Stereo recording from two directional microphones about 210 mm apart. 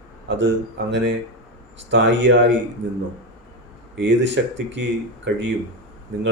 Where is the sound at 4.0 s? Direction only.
60° right (ahead or behind).